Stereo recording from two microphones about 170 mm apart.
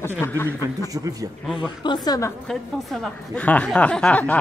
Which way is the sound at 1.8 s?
25° left (ahead or behind).